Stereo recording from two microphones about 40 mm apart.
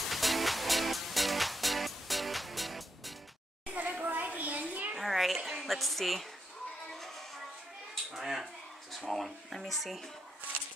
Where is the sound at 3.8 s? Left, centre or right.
Right.